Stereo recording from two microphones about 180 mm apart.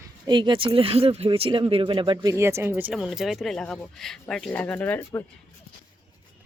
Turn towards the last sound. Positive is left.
turn(degrees=10)  # may be behind; listen again after turning